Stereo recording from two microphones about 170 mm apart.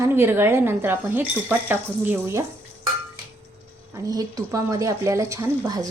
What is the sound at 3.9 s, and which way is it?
Speech, 20° right (ahead or behind).